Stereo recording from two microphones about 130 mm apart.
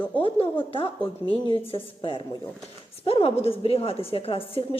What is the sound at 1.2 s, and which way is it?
A woman's voice, 40° left (ahead or behind).